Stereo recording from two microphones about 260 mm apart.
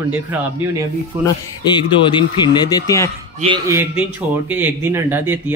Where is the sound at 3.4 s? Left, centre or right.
Centre.